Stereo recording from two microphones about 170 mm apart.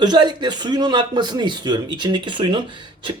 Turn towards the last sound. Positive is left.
turn(degrees=-30)  # may be behind; listen again after turning